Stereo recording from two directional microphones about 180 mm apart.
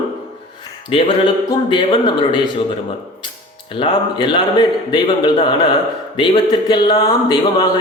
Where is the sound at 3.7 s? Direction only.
25° left (ahead or behind).